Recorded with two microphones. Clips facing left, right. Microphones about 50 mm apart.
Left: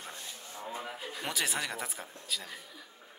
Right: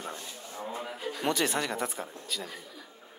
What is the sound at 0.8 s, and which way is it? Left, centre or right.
Speech, centre.